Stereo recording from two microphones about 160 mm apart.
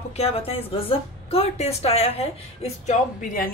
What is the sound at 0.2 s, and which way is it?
A woman's voice, 35° left (ahead or behind).